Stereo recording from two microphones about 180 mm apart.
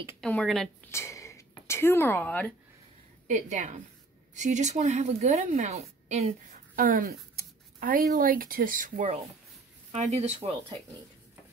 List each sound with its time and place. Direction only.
0.2 s a woman's voice: 5° left (ahead or behind)
0.8 s speech: 15° left (ahead or behind)
3.3 s a woman's voice: 45° right (ahead or behind)